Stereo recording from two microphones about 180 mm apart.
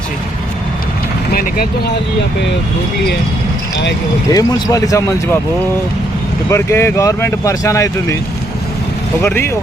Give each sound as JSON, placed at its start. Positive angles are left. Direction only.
{"t": 1.3, "sound": "speech", "side_deg": 55}
{"t": 4.3, "sound": "speech", "side_deg": 20}
{"t": 6.5, "sound": "speech", "side_deg": 15}
{"t": 9.2, "sound": "speech", "side_deg": 15}